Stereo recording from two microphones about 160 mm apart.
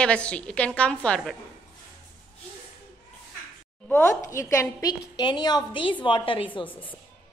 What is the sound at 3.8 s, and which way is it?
A woman's voice, 15° left (ahead or behind).